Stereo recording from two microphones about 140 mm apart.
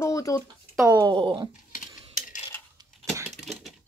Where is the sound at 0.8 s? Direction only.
30° right (ahead or behind).